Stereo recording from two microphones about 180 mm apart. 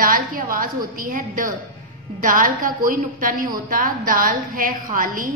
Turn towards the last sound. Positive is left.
turn(degrees=-50)  # may be behind; listen again after turning